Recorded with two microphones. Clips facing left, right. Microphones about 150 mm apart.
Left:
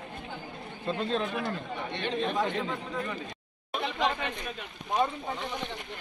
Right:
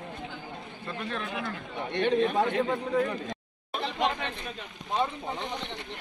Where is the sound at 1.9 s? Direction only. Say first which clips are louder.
Right 7 dB; 55° right (ahead or behind).